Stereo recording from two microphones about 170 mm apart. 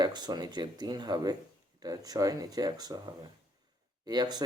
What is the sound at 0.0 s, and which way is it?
Speech, 25° right (ahead or behind).